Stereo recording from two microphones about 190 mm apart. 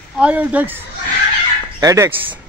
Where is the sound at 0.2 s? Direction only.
5° right (ahead or behind).